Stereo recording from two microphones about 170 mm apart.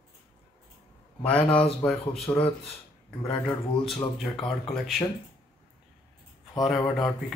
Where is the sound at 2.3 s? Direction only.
20° left (ahead or behind).